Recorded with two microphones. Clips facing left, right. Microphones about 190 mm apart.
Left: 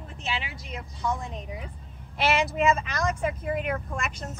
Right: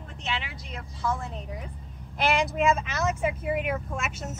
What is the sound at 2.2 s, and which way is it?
Speech, 5° left (ahead or behind).